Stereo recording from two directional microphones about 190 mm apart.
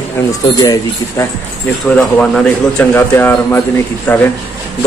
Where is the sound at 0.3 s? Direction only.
20° left (ahead or behind).